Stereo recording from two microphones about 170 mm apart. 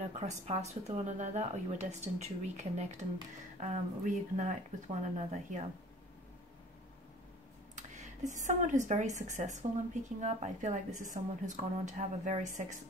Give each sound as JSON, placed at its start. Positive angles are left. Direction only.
{"t": 0.0, "sound": "a woman's voice", "side_deg": -40}
{"t": 7.7, "sound": "a woman's voice", "side_deg": -45}